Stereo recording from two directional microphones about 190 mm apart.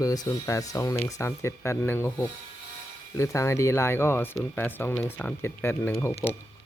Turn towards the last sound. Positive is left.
turn(degrees=15)  # may be behind; listen again after turning